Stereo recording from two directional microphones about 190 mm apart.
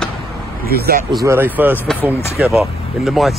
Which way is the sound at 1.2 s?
10° right (ahead or behind).